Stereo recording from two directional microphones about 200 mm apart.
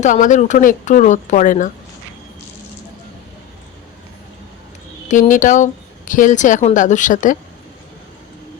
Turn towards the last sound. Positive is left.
turn(degrees=40)  # may be behind; listen again after turning